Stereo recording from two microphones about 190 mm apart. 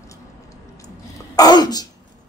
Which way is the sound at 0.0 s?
15° left (ahead or behind).